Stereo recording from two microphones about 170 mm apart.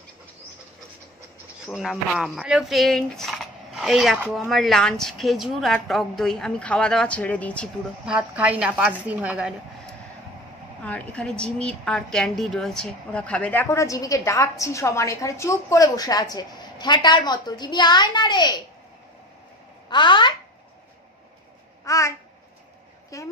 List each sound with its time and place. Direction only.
1.7 s speech: centre (ahead or behind)
8.0 s a woman's voice: 5° right (ahead or behind)
10.8 s a woman's voice: 10° left (ahead or behind); by 18.6 s 25° left (ahead or behind)
19.9 s speech: 25° left (ahead or behind)
21.8 s babbling: 20° left (ahead or behind)
23.1 s speech: 20° left (ahead or behind)